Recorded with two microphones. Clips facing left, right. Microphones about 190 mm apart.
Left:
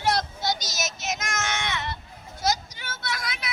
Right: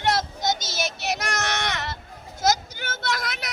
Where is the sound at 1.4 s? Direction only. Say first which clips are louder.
Right 2 dB; 70° right (ahead or behind).